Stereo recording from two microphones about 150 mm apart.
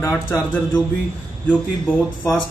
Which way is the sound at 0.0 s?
20° left (ahead or behind).